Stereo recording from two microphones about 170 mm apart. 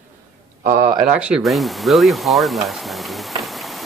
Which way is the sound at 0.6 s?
55° right (ahead or behind).